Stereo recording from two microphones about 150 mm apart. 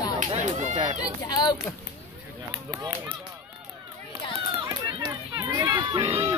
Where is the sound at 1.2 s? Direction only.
30° left (ahead or behind).